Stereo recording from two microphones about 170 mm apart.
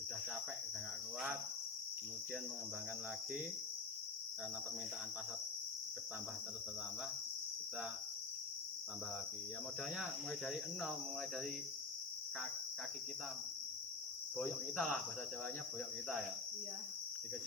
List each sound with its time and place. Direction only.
10.0 s cricket: 5° right (ahead or behind)
14.3 s cricket: centre (ahead or behind)